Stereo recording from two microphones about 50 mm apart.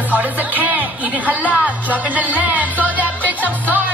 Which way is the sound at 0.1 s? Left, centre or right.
Right.